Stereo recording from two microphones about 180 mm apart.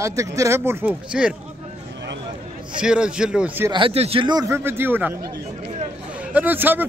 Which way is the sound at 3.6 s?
30° right (ahead or behind).